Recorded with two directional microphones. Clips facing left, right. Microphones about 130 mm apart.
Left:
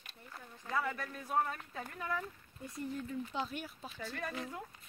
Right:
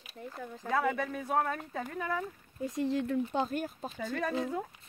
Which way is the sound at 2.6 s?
90° right.